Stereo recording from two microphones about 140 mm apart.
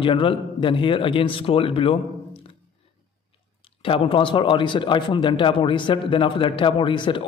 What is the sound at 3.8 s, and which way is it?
A man's voice, 40° left (ahead or behind).